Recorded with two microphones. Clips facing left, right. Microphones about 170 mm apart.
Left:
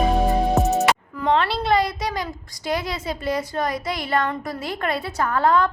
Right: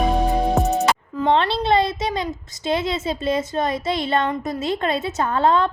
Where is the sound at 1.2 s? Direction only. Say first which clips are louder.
Right 4 dB; 30° right (ahead or behind).